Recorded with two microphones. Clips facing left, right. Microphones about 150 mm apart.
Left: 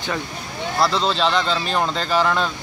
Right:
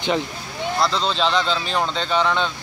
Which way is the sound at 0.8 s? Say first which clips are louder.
Left 2 dB; centre (ahead or behind).